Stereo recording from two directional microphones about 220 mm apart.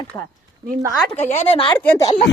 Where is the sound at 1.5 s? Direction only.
25° left (ahead or behind).